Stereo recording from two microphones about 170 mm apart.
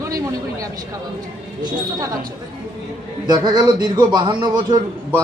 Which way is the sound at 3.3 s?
25° right (ahead or behind).